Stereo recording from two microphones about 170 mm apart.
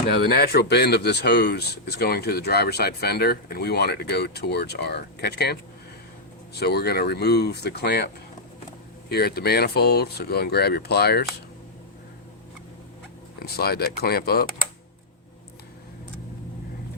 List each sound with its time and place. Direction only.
0.2 s speech: 65° left (ahead or behind)
13.4 s speech: 65° left (ahead or behind)